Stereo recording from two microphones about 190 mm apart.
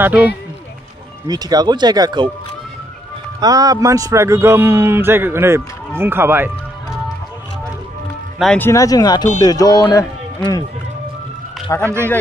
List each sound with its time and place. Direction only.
0.0 s speech: 5° right (ahead or behind)
1.2 s speech: 20° right (ahead or behind)
3.3 s speech: 20° right (ahead or behind)
8.4 s speech: 5° left (ahead or behind)
11.7 s speech: 15° left (ahead or behind)